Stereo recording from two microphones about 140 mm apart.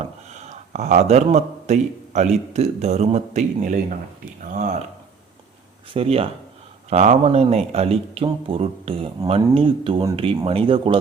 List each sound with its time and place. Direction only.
0.0 s speech: 55° right (ahead or behind)
5.9 s speech: 45° right (ahead or behind)